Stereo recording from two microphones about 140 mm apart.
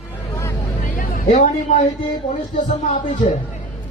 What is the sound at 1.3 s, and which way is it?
Speech, 60° left (ahead or behind).